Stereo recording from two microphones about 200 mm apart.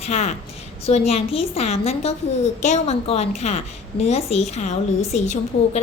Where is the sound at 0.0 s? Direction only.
35° left (ahead or behind).